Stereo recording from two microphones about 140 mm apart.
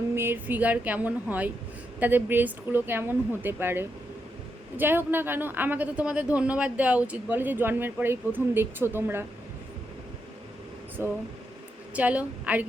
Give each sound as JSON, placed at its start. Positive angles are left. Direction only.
{"t": 0.2, "sound": "speech", "side_deg": -15}
{"t": 11.0, "sound": "speech", "side_deg": -15}